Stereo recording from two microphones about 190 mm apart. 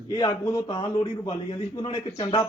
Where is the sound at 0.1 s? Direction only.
20° left (ahead or behind).